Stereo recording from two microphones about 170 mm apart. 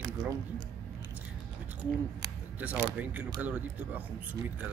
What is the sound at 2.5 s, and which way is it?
Speech, 10° right (ahead or behind).